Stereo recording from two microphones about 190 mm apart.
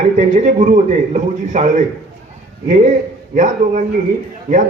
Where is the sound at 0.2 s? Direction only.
40° right (ahead or behind).